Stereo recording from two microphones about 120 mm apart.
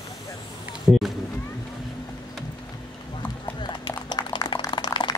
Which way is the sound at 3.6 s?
40° left (ahead or behind).